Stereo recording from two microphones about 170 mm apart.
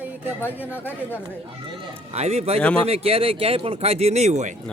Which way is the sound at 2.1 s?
40° right (ahead or behind).